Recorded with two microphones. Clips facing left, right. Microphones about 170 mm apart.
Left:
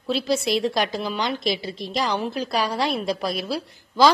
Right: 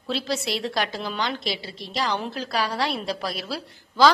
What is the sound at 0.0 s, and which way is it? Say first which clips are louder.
A woman's voice: left 4 dB; 15° left (ahead or behind).